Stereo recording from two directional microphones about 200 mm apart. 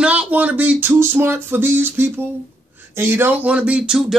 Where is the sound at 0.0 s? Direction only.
5° right (ahead or behind).